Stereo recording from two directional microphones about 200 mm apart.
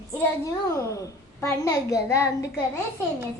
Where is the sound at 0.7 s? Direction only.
15° left (ahead or behind).